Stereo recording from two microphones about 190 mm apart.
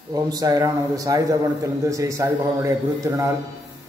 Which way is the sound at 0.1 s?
20° right (ahead or behind).